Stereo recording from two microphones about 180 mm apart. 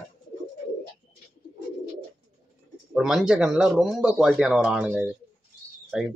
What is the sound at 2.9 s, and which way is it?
Speech, 5° right (ahead or behind).